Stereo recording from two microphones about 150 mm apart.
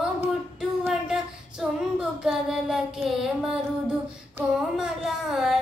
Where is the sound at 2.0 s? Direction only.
Centre (ahead or behind).